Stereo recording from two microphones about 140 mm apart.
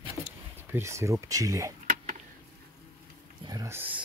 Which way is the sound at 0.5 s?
15° right (ahead or behind).